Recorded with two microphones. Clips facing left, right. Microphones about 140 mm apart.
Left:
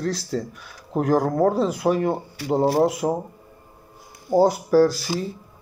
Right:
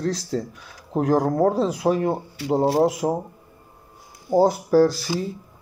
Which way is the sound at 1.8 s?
30° right (ahead or behind).